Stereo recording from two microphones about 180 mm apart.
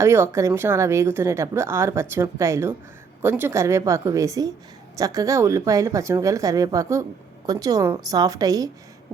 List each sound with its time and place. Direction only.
0.0 s a woman's voice: 15° right (ahead or behind)